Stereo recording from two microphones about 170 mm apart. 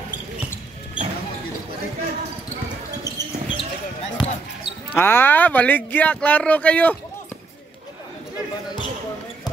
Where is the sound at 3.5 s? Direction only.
35° left (ahead or behind).